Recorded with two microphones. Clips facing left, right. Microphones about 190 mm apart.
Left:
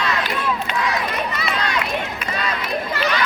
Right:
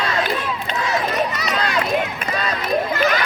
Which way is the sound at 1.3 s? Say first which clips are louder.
Right 1 dB; 40° right (ahead or behind).